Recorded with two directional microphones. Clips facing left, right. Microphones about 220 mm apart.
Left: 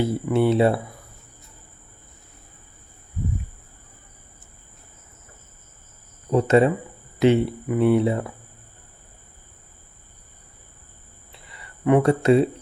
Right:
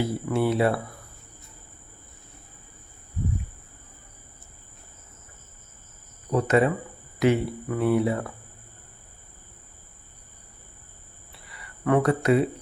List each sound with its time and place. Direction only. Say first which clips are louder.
0.0 s speech: left 4 dB; 25° left (ahead or behind)
6.3 s speech: left 4 dB; 25° left (ahead or behind)
11.3 s a sound: left 2 dB; 25° left (ahead or behind)